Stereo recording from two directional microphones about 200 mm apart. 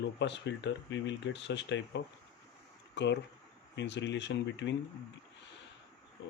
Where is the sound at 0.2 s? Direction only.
60° left (ahead or behind).